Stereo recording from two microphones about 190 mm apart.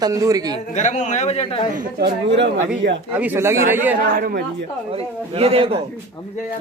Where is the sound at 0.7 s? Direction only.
40° left (ahead or behind).